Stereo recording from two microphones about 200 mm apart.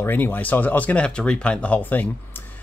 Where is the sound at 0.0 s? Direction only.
10° left (ahead or behind).